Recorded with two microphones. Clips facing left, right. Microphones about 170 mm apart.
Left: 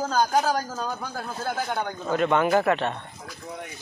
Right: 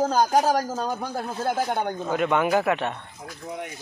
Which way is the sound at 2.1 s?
10° right (ahead or behind).